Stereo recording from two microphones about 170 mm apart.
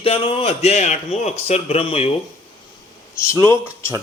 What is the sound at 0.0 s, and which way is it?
A man's voice, 35° left (ahead or behind).